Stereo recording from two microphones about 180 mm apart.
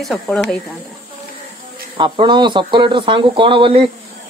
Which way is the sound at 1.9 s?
25° right (ahead or behind).